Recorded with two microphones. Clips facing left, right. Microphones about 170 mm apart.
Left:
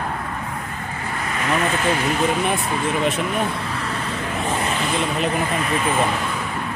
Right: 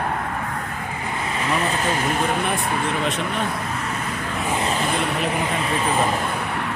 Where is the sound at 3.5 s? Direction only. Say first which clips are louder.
Even; 35° left (ahead or behind).